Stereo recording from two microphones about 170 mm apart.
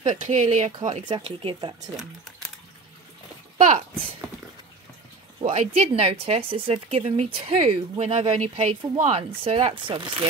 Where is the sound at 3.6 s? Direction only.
45° right (ahead or behind).